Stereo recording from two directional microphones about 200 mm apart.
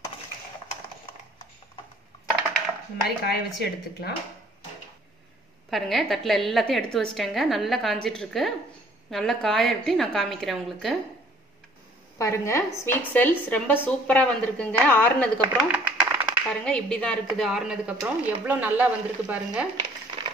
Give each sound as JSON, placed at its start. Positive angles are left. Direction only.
{"t": 3.3, "sound": "speech", "side_deg": 55}
{"t": 5.7, "sound": "a woman's voice", "side_deg": 0}
{"t": 12.2, "sound": "a woman's voice", "side_deg": 15}
{"t": 15.5, "sound": "a sound", "side_deg": -5}
{"t": 16.4, "sound": "a woman's voice", "side_deg": 5}